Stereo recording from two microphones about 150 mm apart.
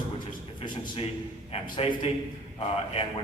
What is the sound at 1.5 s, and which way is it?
Speech, 40° left (ahead or behind).